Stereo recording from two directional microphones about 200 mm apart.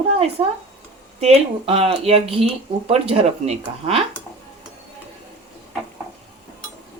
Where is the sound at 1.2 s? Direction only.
30° right (ahead or behind).